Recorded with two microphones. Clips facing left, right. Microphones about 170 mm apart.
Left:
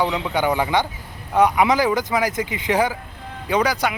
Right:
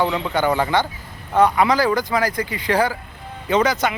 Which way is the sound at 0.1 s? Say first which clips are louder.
Right 1 dB; 5° left (ahead or behind).